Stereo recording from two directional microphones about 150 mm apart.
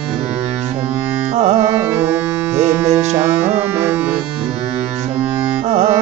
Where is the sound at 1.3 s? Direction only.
45° right (ahead or behind).